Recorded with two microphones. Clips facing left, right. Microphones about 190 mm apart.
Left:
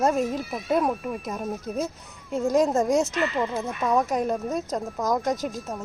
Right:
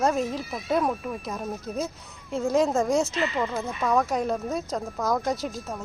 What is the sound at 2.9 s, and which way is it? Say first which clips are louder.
Speech: left 1 dB; 40° left (ahead or behind).